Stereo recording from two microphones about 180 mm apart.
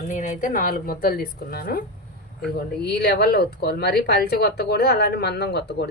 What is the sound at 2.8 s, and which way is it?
Speech, 65° left (ahead or behind).